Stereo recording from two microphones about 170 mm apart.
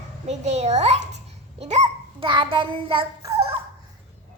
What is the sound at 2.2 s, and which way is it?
A child's voice, 30° right (ahead or behind).